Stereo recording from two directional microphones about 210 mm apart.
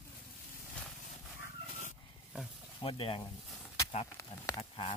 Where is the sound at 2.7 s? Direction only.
25° left (ahead or behind).